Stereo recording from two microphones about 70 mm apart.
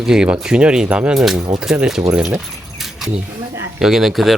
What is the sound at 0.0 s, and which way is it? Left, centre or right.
Speech, centre.